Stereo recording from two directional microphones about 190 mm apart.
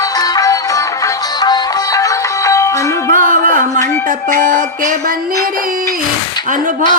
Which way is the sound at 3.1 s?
45° right (ahead or behind).